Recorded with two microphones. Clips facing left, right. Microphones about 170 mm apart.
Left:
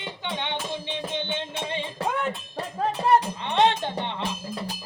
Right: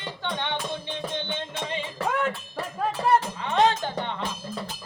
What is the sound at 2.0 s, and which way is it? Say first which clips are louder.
Music: right 2 dB; 20° left (ahead or behind).